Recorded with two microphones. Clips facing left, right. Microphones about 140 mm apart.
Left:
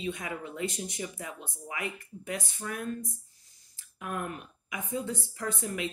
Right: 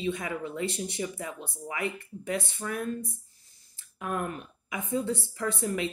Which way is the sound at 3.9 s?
35° right (ahead or behind).